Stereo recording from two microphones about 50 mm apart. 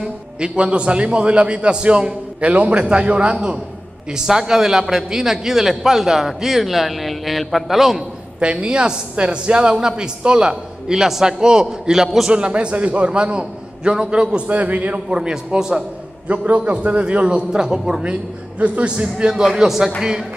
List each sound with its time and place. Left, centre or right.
0.0 s a man's voice: centre
8.4 s a woman's voice: centre
12.3 s a man's voice: right
15.0 s a woman's voice: centre
16.3 s a man's voice: right; by 20.2 s centre